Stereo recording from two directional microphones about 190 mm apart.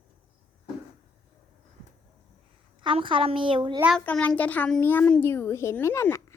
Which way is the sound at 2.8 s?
25° right (ahead or behind).